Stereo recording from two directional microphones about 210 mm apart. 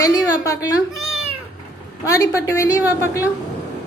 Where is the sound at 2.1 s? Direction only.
15° left (ahead or behind).